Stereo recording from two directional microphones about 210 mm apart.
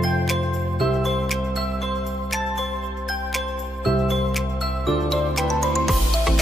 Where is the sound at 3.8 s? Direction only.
Centre (ahead or behind).